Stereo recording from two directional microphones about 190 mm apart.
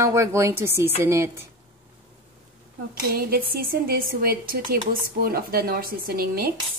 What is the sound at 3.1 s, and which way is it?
Speech, 50° right (ahead or behind).